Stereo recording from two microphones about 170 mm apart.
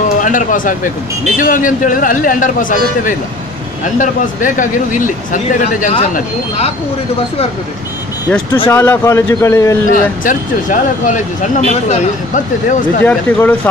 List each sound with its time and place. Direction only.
0.2 s speech: 50° left (ahead or behind)
8.6 s a man's voice: 10° left (ahead or behind)
9.8 s speech: 50° left (ahead or behind)
13.0 s a man's voice: 10° left (ahead or behind)